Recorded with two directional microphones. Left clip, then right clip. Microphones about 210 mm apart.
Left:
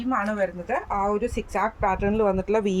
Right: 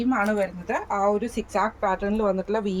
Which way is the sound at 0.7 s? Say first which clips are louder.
Right 3 dB; 15° left (ahead or behind).